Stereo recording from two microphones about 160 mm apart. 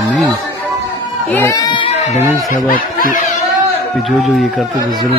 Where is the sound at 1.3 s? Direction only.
20° left (ahead or behind).